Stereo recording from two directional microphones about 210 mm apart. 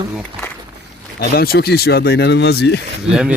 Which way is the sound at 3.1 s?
5° right (ahead or behind).